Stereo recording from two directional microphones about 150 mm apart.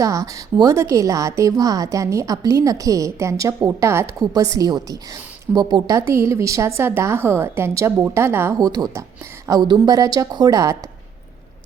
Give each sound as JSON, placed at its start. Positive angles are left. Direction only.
{"t": 0.0, "sound": "a woman's voice", "side_deg": -25}